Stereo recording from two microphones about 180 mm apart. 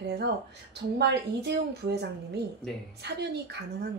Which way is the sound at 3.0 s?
65° right (ahead or behind).